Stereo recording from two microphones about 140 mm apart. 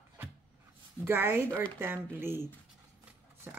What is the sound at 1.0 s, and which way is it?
Speech, 15° right (ahead or behind).